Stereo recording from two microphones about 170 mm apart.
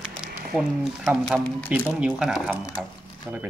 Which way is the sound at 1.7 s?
5° right (ahead or behind).